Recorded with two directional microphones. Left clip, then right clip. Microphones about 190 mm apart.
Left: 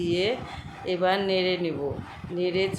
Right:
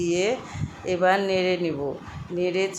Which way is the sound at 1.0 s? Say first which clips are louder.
Right 4 dB; 15° right (ahead or behind).